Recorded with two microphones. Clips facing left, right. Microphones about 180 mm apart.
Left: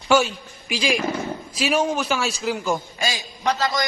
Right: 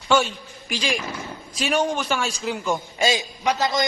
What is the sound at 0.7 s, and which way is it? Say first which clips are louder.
A man's voice: left 4 dB; 10° left (ahead or behind).